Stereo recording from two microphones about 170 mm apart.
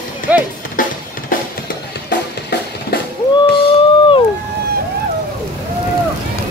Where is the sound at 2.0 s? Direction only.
75° left (ahead or behind).